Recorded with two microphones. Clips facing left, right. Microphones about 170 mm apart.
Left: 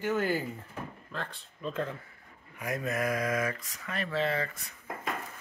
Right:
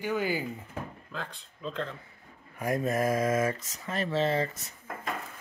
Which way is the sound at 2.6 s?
30° right (ahead or behind).